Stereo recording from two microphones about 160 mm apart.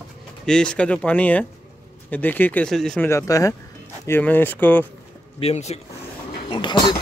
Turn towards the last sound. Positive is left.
turn(degrees=30)  # may be behind; listen again after turning